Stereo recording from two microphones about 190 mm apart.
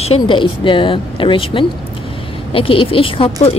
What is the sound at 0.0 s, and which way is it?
Speech, 30° left (ahead or behind).